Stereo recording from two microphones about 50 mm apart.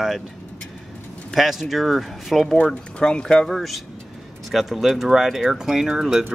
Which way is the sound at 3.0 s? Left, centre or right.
Centre.